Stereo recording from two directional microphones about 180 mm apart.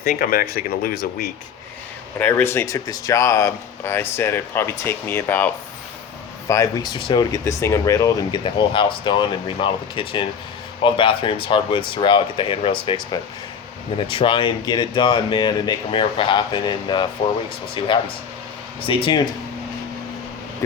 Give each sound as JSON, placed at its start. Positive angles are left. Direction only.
{"t": 0.0, "sound": "speech", "side_deg": 55}
{"t": 2.1, "sound": "speech", "side_deg": 10}
{"t": 6.5, "sound": "speech", "side_deg": 20}